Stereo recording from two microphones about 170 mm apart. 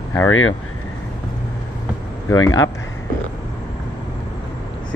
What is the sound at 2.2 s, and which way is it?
Speech, 20° left (ahead or behind).